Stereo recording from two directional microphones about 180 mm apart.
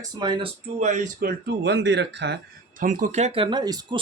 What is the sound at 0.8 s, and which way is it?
Speech, 40° right (ahead or behind).